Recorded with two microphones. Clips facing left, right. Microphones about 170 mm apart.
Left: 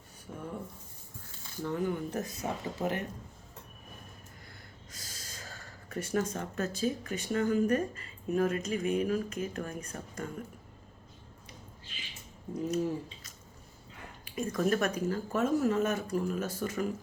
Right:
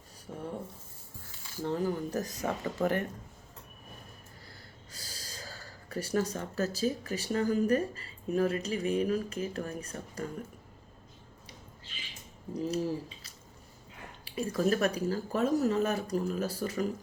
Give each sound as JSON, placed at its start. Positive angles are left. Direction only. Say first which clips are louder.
{"t": 0.3, "sound": "speech", "louder": "right 2 dB", "side_deg": -35}
{"t": 1.6, "sound": "speech", "louder": "right 1 dB", "side_deg": -35}
{"t": 2.4, "sound": "speech", "louder": "right 4 dB", "side_deg": -60}
{"t": 4.9, "sound": "speech", "louder": "right 2 dB", "side_deg": -35}
{"t": 12.5, "sound": "speech", "louder": "even", "side_deg": -30}
{"t": 14.3, "sound": "speech", "louder": "right 1 dB", "side_deg": -35}